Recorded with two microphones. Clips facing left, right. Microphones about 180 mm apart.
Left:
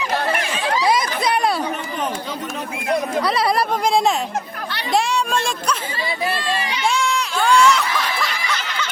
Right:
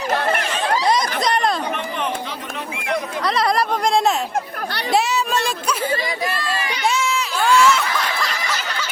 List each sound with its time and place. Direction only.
0.0 s chatter: 45° right (ahead or behind)
0.9 s chatter: 5° left (ahead or behind)
3.2 s speech: 5° left (ahead or behind)
6.2 s a sound: 30° left (ahead or behind)
6.8 s snicker: 5° right (ahead or behind)